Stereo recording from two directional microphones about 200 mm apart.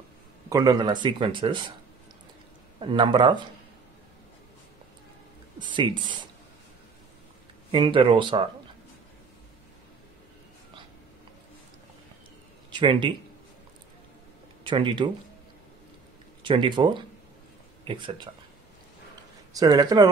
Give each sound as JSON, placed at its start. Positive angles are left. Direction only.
{"t": 0.5, "sound": "speech", "side_deg": -20}
{"t": 2.8, "sound": "speech", "side_deg": -25}
{"t": 5.6, "sound": "speech", "side_deg": -25}
{"t": 7.7, "sound": "speech", "side_deg": -25}
{"t": 12.7, "sound": "a man's voice", "side_deg": -25}
{"t": 14.7, "sound": "speech", "side_deg": -25}
{"t": 16.4, "sound": "speech", "side_deg": -25}
{"t": 19.5, "sound": "speech", "side_deg": -20}